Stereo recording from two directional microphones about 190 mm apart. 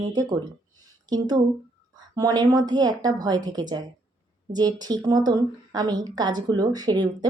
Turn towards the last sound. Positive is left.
turn(degrees=-20)  # may be behind; listen again after turning